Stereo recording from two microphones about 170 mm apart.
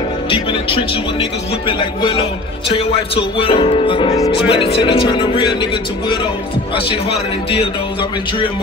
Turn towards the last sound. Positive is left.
turn(degrees=35)  # may be behind; listen again after turning